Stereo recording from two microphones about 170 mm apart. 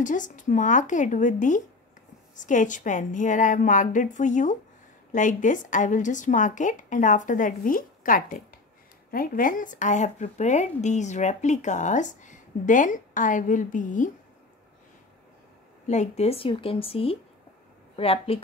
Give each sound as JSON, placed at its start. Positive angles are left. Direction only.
{"t": 0.0, "sound": "speech", "side_deg": 50}
{"t": 15.9, "sound": "a woman's voice", "side_deg": 40}